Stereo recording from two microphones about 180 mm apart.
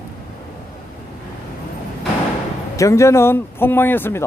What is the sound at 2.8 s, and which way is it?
Speech, 15° left (ahead or behind).